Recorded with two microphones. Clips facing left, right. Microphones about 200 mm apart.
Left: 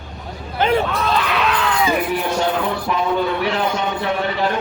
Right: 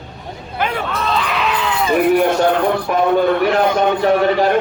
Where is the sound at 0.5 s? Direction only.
25° left (ahead or behind).